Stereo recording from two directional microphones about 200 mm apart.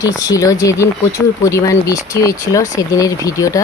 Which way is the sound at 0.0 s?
15° left (ahead or behind).